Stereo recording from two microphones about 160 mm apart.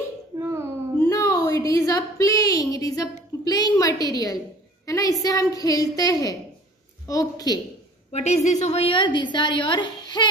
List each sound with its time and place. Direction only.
0.4 s a sound: 15° right (ahead or behind)
1.0 s a woman's voice: 20° left (ahead or behind)
8.1 s a woman's voice: 45° left (ahead or behind); by 10.2 s 30° left (ahead or behind)